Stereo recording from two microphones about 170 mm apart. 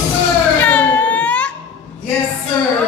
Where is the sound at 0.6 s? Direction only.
10° left (ahead or behind).